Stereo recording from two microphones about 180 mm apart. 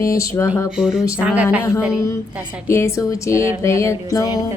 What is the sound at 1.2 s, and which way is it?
Music, 5° right (ahead or behind).